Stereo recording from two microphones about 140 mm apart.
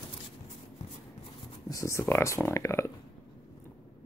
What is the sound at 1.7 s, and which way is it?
Speech, 20° left (ahead or behind).